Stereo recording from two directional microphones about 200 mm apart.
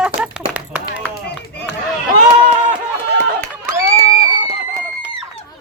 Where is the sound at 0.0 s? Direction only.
5° right (ahead or behind).